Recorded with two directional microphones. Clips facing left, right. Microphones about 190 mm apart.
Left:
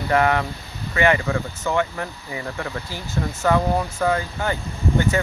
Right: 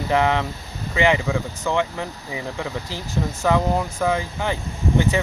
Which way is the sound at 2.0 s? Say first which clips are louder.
Right 1 dB; 15° right (ahead or behind).